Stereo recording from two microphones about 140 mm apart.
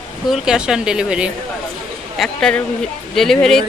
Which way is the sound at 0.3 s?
5° right (ahead or behind).